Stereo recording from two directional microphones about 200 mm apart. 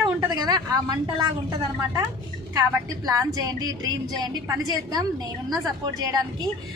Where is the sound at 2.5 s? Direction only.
20° right (ahead or behind).